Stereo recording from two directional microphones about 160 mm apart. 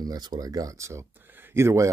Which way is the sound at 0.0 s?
25° right (ahead or behind).